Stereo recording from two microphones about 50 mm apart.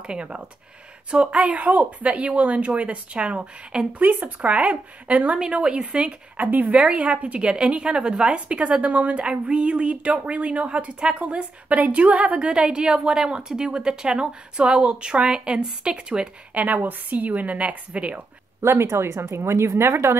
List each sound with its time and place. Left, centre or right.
0.0 s speech: right
4.0 s a woman's voice: right
4.4 s speech: right
16.6 s a woman's voice: right
18.6 s speech: right